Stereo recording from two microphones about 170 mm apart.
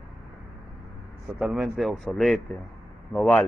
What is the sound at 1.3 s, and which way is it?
A man's voice, 5° right (ahead or behind).